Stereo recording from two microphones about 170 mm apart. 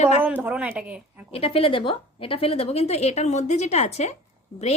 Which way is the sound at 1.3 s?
35° left (ahead or behind).